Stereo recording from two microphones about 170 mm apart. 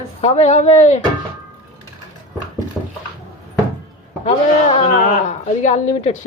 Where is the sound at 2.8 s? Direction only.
5° left (ahead or behind).